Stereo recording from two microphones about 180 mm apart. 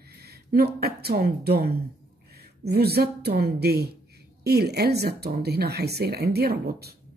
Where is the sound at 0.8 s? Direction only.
60° right (ahead or behind).